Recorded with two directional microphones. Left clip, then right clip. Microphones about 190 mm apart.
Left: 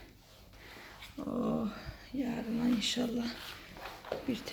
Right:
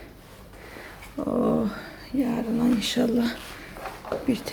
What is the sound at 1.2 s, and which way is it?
Speech, centre (ahead or behind).